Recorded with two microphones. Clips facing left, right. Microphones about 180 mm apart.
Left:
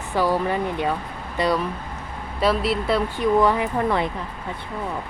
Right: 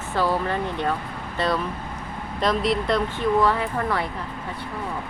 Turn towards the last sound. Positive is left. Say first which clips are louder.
# left 3 dB
turn(degrees=20)  # may be behind; listen again after turning